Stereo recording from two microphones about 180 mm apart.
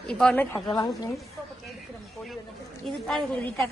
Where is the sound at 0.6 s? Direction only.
20° left (ahead or behind).